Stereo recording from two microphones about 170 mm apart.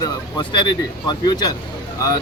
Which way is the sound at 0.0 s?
25° left (ahead or behind).